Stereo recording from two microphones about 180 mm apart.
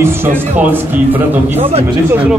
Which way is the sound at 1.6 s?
35° right (ahead or behind).